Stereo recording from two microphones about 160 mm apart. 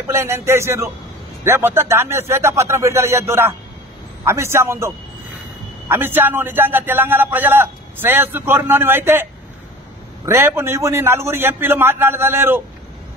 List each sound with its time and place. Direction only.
0.1 s a man's voice: 15° right (ahead or behind)